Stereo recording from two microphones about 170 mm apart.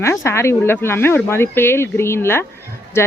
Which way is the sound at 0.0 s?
15° left (ahead or behind).